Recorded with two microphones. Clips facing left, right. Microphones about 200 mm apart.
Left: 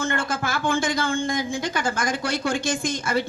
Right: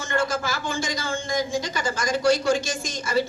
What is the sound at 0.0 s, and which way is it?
A man's voice, 55° left (ahead or behind).